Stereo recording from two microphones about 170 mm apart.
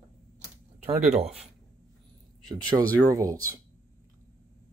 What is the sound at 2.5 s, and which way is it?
Speech, 20° right (ahead or behind).